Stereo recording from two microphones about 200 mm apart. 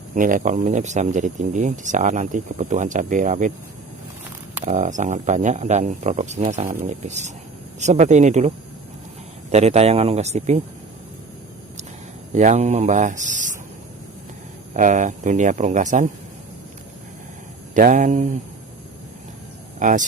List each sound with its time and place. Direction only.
0.1 s speech: 40° right (ahead or behind)
4.6 s speech: 40° right (ahead or behind)
12.3 s speech: 35° right (ahead or behind)
14.7 s speech: 40° right (ahead or behind)
17.7 s speech: 40° right (ahead or behind)
19.8 s speech: 40° right (ahead or behind)